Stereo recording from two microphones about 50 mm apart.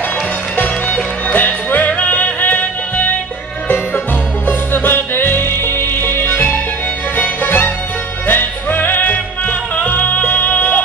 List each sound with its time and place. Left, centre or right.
0.6 s music: left